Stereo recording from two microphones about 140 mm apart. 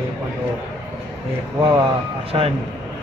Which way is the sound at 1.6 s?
25° right (ahead or behind).